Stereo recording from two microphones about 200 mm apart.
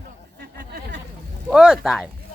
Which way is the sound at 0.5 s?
55° right (ahead or behind).